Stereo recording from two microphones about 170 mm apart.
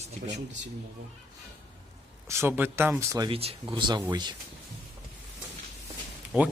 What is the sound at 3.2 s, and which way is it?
Speech, 35° right (ahead or behind).